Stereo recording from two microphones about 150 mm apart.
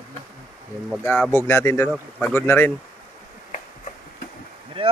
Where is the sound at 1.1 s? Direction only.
10° left (ahead or behind).